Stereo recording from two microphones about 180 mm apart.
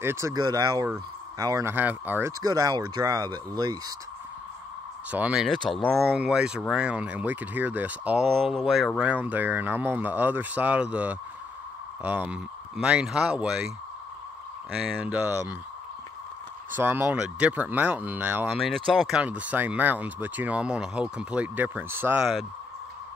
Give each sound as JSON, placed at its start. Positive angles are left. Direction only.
{"t": 0.0, "sound": "speech", "side_deg": -15}
{"t": 5.1, "sound": "speech", "side_deg": -5}
{"t": 14.8, "sound": "speech", "side_deg": -5}
{"t": 16.7, "sound": "speech", "side_deg": -10}
{"t": 18.9, "sound": "speech", "side_deg": 0}